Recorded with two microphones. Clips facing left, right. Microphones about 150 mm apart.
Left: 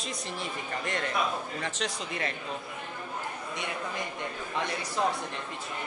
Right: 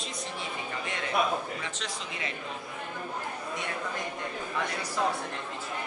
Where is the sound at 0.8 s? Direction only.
50° left (ahead or behind).